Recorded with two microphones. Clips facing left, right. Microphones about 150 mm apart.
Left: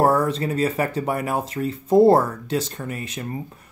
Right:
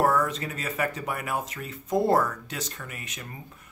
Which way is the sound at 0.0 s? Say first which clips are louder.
Left 5 dB; 30° left (ahead or behind).